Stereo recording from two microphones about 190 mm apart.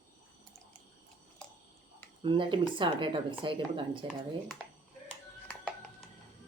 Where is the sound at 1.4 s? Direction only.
5° left (ahead or behind).